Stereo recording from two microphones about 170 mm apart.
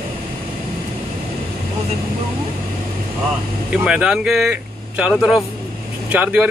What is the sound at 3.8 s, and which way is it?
Speech, 5° right (ahead or behind).